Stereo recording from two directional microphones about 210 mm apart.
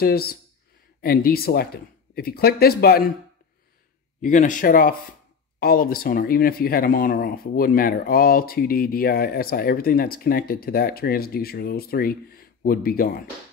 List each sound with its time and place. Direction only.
0.0 s speech: 45° left (ahead or behind)
4.2 s speech: 40° left (ahead or behind)